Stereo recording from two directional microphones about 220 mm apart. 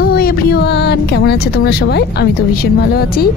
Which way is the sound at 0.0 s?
45° left (ahead or behind).